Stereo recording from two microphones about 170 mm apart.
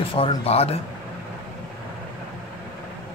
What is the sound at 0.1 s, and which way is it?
Speech, 35° left (ahead or behind).